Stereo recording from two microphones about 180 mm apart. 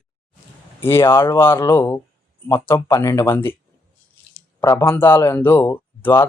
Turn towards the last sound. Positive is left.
turn(degrees=10)  # may be behind; listen again after turning